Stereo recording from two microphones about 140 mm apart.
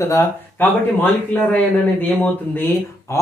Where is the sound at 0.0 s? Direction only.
20° left (ahead or behind).